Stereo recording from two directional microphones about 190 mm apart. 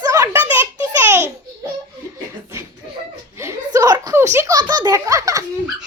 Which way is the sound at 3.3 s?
15° right (ahead or behind).